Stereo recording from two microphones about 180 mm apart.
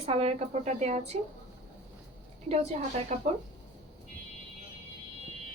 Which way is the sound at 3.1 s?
45° right (ahead or behind).